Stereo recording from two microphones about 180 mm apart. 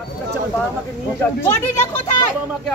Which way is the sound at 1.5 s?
15° left (ahead or behind).